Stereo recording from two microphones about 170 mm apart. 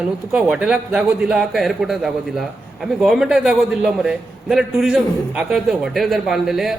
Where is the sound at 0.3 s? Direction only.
Centre (ahead or behind).